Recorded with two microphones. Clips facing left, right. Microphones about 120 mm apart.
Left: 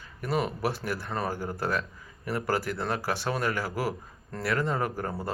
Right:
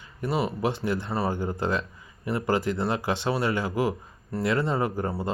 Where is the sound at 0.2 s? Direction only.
15° right (ahead or behind).